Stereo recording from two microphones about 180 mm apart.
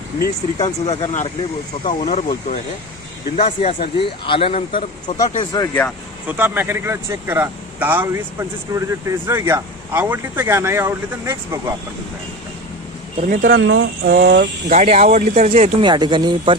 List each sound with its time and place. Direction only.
0.6 s speech: 35° left (ahead or behind)
5.0 s speech: 20° left (ahead or behind)
6.2 s speech: 10° right (ahead or behind)
13.2 s speech: 50° right (ahead or behind)
13.6 s speech: 80° right; by 14.4 s 60° right (ahead or behind)
14.7 s speech: 40° right (ahead or behind)
15.8 s speech: 25° right (ahead or behind)